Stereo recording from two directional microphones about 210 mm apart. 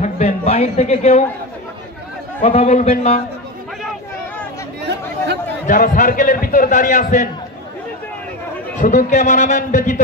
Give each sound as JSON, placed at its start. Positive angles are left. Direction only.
{"t": 0.0, "sound": "a man's voice", "side_deg": 30}
{"t": 2.4, "sound": "a man's voice", "side_deg": 35}
{"t": 5.7, "sound": "a man's voice", "side_deg": 40}
{"t": 8.8, "sound": "a man's voice", "side_deg": 35}